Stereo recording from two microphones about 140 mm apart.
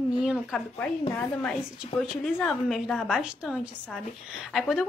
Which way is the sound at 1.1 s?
5° left (ahead or behind).